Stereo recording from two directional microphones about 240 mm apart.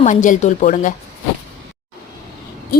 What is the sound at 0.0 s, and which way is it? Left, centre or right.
Speech, left.